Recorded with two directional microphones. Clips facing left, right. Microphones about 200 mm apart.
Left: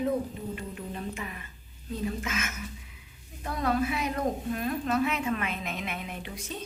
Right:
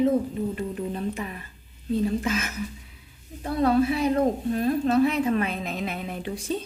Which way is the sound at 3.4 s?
30° right (ahead or behind).